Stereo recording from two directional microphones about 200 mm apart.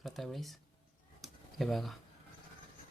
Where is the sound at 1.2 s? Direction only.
Centre (ahead or behind).